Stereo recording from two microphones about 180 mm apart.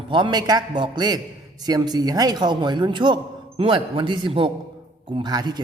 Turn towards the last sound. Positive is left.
turn(degrees=-20)  # may be behind; listen again after turning